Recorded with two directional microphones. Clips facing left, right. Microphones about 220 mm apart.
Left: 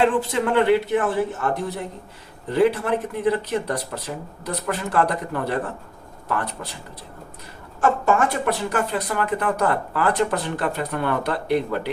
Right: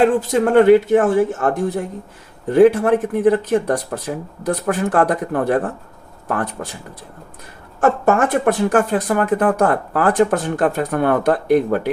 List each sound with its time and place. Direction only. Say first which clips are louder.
0.0 s speech: right 5 dB; 45° right (ahead or behind)
7.8 s speech: right 4 dB; 50° right (ahead or behind)